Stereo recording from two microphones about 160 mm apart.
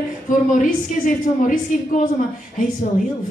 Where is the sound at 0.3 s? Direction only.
55° left (ahead or behind).